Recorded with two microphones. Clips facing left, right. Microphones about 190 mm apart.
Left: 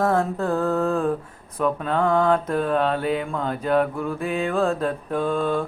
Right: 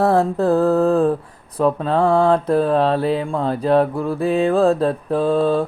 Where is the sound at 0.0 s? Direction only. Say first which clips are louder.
Right 5 dB; 35° right (ahead or behind).